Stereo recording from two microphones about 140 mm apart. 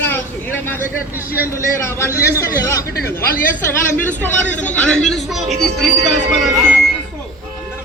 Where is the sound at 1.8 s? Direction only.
20° left (ahead or behind); by 5.8 s centre (ahead or behind).